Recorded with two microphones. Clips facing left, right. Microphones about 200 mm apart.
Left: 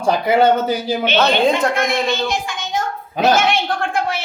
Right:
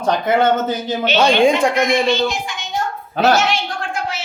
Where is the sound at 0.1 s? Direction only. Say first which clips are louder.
Left 2 dB; 10° left (ahead or behind).